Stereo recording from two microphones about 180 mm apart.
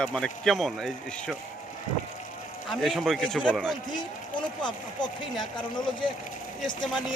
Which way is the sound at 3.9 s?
25° left (ahead or behind).